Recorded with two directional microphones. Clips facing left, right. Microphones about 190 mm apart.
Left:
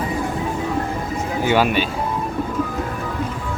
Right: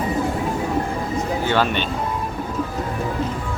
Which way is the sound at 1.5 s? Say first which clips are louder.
Left 5 dB; 10° left (ahead or behind).